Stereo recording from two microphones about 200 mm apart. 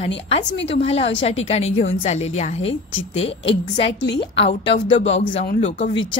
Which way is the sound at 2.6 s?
75° left (ahead or behind).